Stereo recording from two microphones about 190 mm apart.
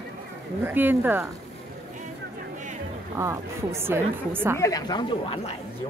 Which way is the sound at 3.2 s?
15° right (ahead or behind).